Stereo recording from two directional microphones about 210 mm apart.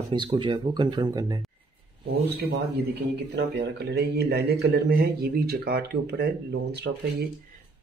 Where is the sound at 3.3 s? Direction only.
50° right (ahead or behind).